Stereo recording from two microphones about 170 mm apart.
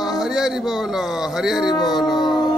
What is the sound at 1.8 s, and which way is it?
Music, centre (ahead or behind).